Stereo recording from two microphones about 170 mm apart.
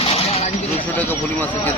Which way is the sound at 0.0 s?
35° left (ahead or behind).